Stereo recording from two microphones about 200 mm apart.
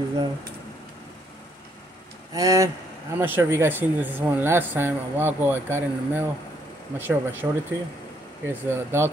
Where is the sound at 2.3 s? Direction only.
15° right (ahead or behind).